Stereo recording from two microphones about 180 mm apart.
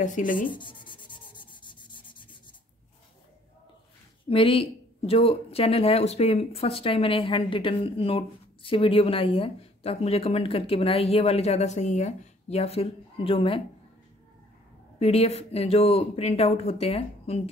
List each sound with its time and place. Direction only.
0.0 s speech: 45° left (ahead or behind)
0.5 s sanding: 25° left (ahead or behind)
4.3 s speech: 30° left (ahead or behind)
15.0 s speech: 35° left (ahead or behind)